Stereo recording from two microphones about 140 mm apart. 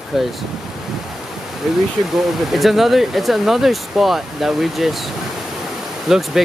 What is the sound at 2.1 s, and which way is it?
Speech, centre (ahead or behind).